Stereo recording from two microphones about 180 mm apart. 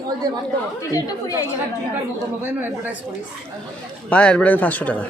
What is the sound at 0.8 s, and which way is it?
Speech, 20° left (ahead or behind).